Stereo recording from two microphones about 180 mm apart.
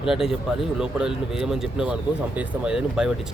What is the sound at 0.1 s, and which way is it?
Speech, centre (ahead or behind).